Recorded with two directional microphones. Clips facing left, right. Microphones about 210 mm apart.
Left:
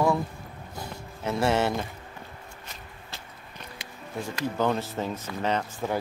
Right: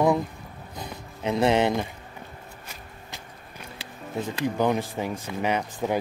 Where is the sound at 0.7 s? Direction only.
20° right (ahead or behind).